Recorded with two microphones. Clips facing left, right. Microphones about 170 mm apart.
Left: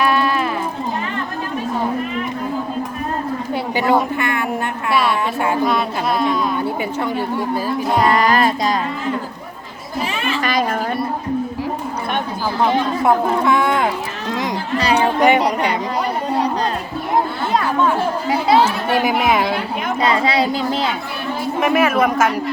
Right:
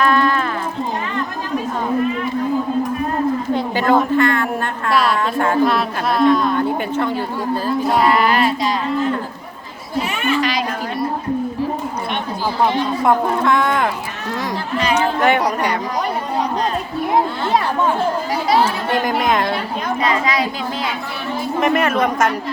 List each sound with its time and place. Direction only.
0.0 s music: 10° left (ahead or behind)
3.5 s speech: 10° left (ahead or behind)
4.9 s speech: centre (ahead or behind)
8.1 s a child's voice: 40° left (ahead or behind)
10.4 s speech: 50° left (ahead or behind)
13.1 s speech: 5° left (ahead or behind)
14.8 s a child's voice: 35° left (ahead or behind)
15.2 s speech: 10° left (ahead or behind)
18.6 s speech: 10° left (ahead or behind)
20.0 s a child's voice: 35° left (ahead or behind)
21.6 s speech: 5° left (ahead or behind)